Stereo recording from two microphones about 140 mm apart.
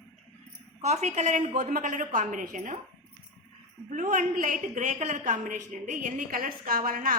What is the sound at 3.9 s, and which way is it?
A woman's voice, 65° right (ahead or behind).